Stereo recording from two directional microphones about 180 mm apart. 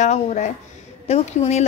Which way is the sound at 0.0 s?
40° left (ahead or behind).